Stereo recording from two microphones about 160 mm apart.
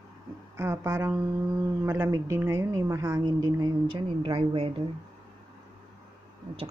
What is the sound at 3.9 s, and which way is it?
Speech, 35° right (ahead or behind).